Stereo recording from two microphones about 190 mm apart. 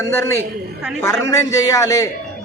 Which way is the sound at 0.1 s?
15° left (ahead or behind).